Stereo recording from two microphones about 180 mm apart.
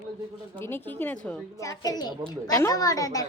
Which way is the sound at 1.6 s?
20° left (ahead or behind).